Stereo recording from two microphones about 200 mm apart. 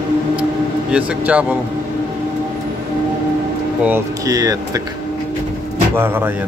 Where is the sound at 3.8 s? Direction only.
15° right (ahead or behind).